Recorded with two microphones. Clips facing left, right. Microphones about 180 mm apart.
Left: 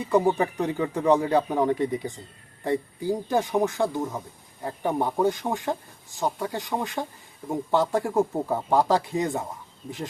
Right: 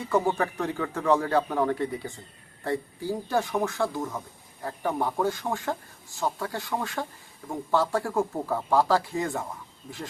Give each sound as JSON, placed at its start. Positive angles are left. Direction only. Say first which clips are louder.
{"t": 0.0, "sound": "speech", "louder": "left 3 dB", "side_deg": 15}